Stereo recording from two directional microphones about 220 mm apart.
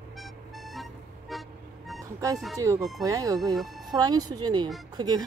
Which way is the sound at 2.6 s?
15° right (ahead or behind).